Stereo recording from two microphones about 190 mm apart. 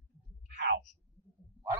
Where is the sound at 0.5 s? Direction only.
65° right (ahead or behind).